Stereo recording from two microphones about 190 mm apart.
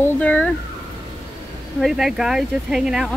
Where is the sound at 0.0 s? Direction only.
5° left (ahead or behind).